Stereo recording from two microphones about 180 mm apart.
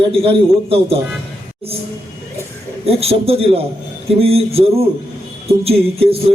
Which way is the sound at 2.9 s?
35° right (ahead or behind).